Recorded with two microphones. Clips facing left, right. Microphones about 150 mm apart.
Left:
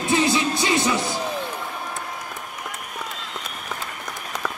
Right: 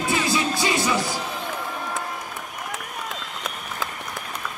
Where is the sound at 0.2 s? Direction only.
20° left (ahead or behind).